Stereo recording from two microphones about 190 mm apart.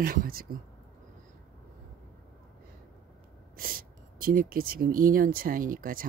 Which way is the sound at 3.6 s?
50° right (ahead or behind).